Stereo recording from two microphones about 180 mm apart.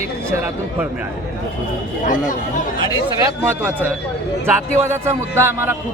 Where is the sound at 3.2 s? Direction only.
10° right (ahead or behind).